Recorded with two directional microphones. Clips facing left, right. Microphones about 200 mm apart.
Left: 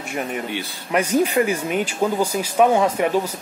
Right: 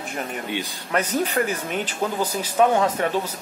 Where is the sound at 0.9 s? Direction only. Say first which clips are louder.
Left 4 dB; 10° left (ahead or behind).